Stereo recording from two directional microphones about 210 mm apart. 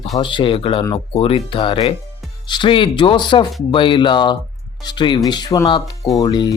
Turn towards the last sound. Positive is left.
turn(degrees=20)  # may be behind; listen again after turning